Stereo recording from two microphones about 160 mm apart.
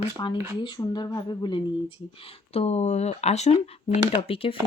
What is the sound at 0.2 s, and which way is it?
Speech, 25° left (ahead or behind).